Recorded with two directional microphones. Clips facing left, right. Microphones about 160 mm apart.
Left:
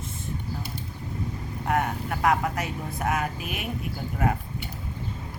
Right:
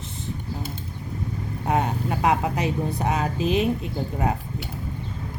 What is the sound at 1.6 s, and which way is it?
Speech, 20° right (ahead or behind).